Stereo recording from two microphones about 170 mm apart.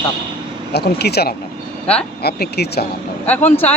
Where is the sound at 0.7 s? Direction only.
70° left (ahead or behind).